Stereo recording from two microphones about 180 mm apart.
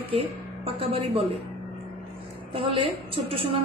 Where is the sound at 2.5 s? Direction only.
30° right (ahead or behind).